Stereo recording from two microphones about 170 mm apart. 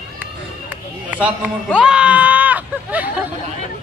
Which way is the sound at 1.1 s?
5° right (ahead or behind).